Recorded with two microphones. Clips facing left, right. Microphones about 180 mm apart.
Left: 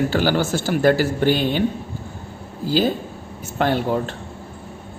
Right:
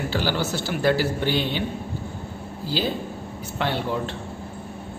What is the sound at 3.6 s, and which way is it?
Speech, 45° left (ahead or behind).